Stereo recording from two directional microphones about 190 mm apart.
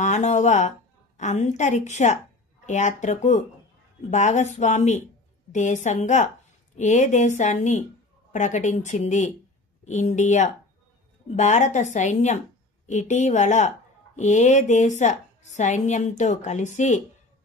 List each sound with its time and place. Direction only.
0.0 s a woman's voice: 40° left (ahead or behind)